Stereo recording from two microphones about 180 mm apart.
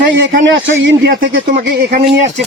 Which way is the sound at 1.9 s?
60° right (ahead or behind).